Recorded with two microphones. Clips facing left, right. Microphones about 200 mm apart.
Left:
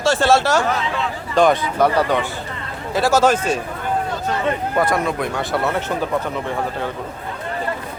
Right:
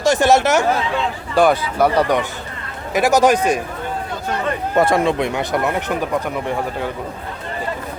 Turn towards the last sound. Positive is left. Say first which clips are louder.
# right 1 dB
turn(degrees=-15)  # may be behind; listen again after turning